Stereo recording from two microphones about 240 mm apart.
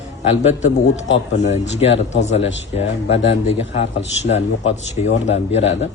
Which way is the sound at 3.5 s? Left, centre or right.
Left.